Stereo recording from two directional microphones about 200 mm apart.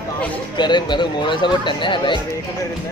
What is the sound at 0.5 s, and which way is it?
Speech, 20° left (ahead or behind).